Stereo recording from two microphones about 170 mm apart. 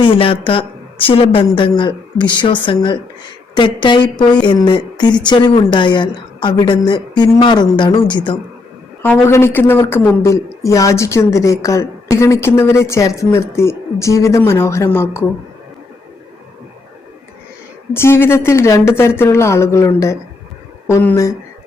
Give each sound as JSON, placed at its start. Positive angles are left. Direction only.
{"t": 0.0, "sound": "a woman's voice", "side_deg": 30}
{"t": 9.0, "sound": "a woman's voice", "side_deg": 10}
{"t": 17.9, "sound": "a woman's voice", "side_deg": 15}